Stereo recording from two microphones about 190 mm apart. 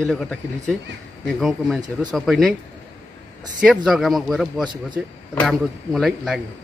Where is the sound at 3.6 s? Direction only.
Centre (ahead or behind).